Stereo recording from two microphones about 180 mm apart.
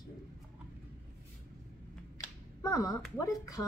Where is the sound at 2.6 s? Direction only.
20° left (ahead or behind).